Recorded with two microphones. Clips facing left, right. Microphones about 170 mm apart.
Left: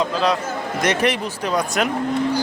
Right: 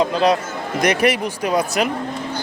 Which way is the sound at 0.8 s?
10° right (ahead or behind).